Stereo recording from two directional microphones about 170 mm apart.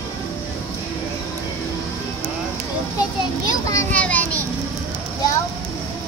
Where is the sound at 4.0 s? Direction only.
10° left (ahead or behind).